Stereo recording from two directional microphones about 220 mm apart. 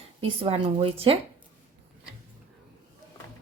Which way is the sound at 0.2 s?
25° right (ahead or behind).